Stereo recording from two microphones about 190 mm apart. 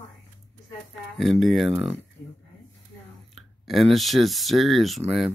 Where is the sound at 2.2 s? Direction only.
50° left (ahead or behind).